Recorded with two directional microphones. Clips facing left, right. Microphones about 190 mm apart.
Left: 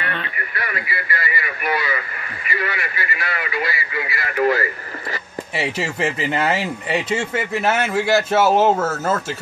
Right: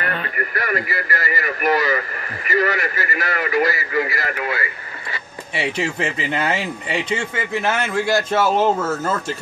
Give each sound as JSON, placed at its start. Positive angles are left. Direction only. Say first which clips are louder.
{"t": 0.0, "sound": "speech", "louder": "right 3 dB", "side_deg": -45}
{"t": 4.4, "sound": "speech", "louder": "left 11 dB", "side_deg": 40}
{"t": 5.6, "sound": "speech", "louder": "even", "side_deg": 5}